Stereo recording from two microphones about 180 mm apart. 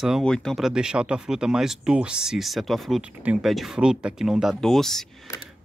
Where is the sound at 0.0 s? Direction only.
Centre (ahead or behind).